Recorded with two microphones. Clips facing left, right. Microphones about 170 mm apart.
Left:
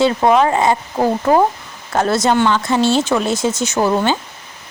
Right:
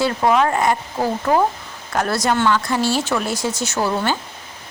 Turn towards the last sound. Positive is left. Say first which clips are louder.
# left 5 dB
turn(degrees=20)  # may be behind; listen again after turning